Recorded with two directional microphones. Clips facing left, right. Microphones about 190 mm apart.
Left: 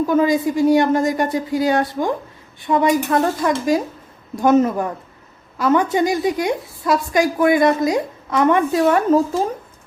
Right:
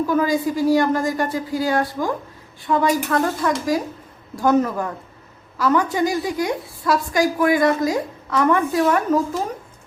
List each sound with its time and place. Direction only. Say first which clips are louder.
0.0 s a woman's voice: left 3 dB; 25° left (ahead or behind)